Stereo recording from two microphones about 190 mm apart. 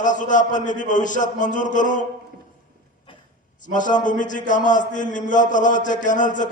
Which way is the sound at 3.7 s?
40° left (ahead or behind).